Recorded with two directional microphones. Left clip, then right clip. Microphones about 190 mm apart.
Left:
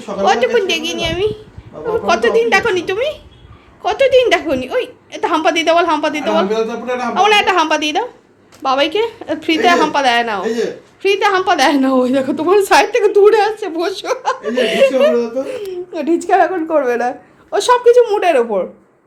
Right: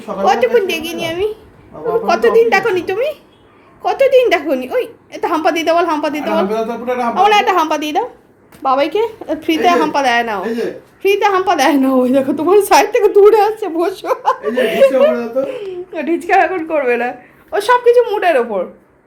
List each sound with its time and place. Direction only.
0.2 s a woman's voice: centre (ahead or behind); by 18.6 s 20° left (ahead or behind)